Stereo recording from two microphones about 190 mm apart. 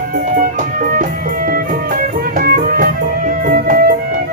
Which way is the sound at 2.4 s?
50° right (ahead or behind).